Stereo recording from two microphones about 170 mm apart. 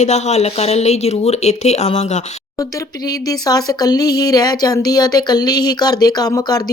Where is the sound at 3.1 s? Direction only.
20° left (ahead or behind).